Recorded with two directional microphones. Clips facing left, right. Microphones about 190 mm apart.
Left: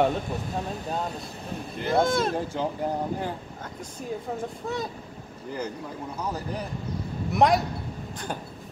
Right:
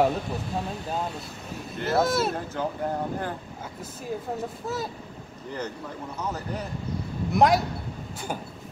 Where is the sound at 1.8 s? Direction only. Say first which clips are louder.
Even; 5° right (ahead or behind).